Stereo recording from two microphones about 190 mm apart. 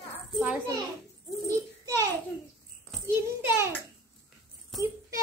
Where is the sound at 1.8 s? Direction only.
20° right (ahead or behind).